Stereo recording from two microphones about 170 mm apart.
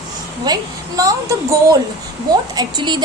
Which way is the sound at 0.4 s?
20° right (ahead or behind).